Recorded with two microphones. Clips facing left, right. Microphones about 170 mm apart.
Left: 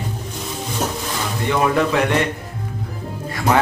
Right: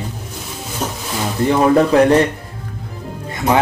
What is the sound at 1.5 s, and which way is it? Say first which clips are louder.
Speech: right 5 dB; 35° right (ahead or behind).